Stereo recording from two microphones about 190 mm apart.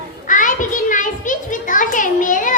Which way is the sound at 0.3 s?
45° left (ahead or behind).